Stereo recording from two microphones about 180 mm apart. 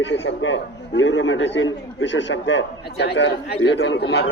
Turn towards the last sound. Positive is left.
turn(degrees=65)  # may be behind; listen again after turning